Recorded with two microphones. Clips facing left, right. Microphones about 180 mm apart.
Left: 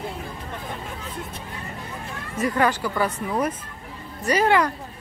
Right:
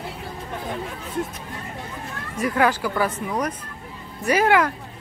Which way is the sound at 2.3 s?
Centre (ahead or behind).